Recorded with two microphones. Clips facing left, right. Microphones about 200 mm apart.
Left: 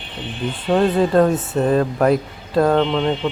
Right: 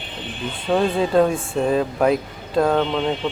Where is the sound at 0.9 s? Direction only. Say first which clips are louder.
Left 2 dB; 5° right (ahead or behind).